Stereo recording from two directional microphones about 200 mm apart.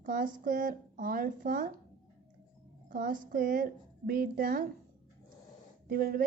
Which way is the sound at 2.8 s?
40° right (ahead or behind).